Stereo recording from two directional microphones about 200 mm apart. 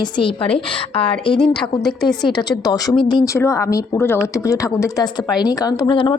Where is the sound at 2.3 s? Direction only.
20° left (ahead or behind).